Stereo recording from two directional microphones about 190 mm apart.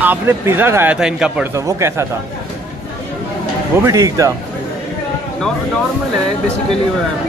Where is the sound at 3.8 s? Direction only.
15° right (ahead or behind).